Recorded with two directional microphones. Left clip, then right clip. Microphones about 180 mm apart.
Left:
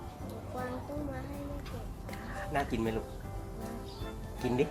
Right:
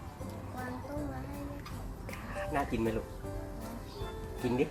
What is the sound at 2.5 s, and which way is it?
Speech, 25° left (ahead or behind).